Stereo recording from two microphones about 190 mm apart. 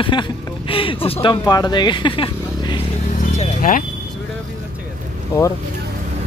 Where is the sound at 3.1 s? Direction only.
40° left (ahead or behind).